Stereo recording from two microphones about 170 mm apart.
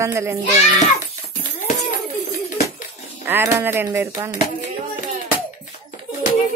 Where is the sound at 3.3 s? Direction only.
15° right (ahead or behind).